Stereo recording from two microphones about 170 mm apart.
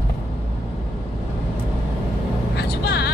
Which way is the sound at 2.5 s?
75° left (ahead or behind).